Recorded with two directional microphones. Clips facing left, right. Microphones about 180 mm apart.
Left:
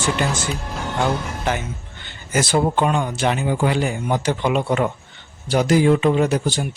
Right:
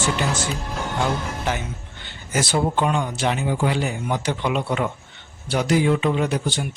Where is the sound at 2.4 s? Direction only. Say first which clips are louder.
Left 3 dB; 55° left (ahead or behind).